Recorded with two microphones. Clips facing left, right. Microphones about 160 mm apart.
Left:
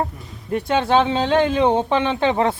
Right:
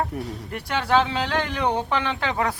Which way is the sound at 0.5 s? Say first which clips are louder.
Left 5 dB; 20° left (ahead or behind).